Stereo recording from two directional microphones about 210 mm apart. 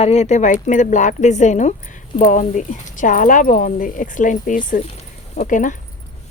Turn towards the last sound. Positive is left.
turn(degrees=35)  # may be behind; listen again after turning